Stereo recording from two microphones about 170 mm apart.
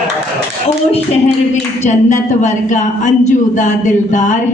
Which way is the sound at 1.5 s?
45° left (ahead or behind).